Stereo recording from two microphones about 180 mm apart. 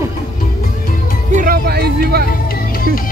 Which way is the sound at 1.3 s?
55° right (ahead or behind).